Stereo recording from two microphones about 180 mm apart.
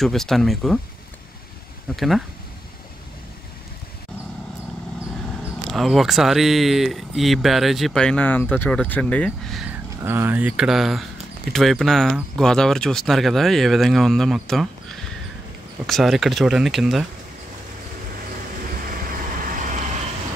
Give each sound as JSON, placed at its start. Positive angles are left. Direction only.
{"t": 0.0, "sound": "speech", "side_deg": 0}
{"t": 2.0, "sound": "speech", "side_deg": 0}
{"t": 5.4, "sound": "speech", "side_deg": 0}
{"t": 9.7, "sound": "speech", "side_deg": -10}
{"t": 18.9, "sound": "vehicle", "side_deg": -50}